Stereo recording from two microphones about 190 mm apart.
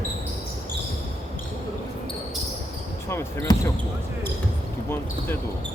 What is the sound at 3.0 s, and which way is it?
Speech, 15° left (ahead or behind).